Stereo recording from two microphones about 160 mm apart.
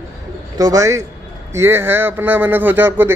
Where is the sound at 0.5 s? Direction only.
20° right (ahead or behind).